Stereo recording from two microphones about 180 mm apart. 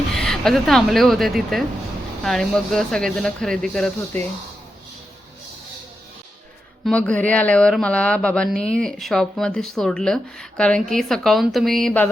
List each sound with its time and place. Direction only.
0.1 s speech: centre (ahead or behind)
6.8 s speech: 5° left (ahead or behind)